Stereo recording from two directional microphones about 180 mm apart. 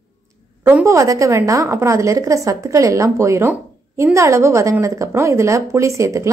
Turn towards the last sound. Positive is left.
turn(degrees=-15)  # may be behind; listen again after turning